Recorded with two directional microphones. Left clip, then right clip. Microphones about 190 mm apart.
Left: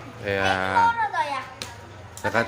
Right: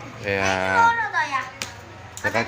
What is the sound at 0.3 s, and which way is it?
Speech, centre (ahead or behind).